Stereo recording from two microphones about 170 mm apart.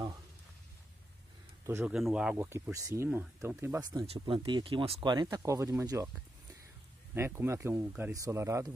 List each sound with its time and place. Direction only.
1.7 s speech: 15° right (ahead or behind)
2.0 s speech: 5° right (ahead or behind)
3.9 s speech: 35° right (ahead or behind); by 6.0 s 20° right (ahead or behind)
7.2 s speech: 15° right (ahead or behind)